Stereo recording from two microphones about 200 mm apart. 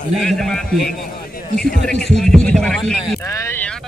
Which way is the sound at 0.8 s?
45° left (ahead or behind).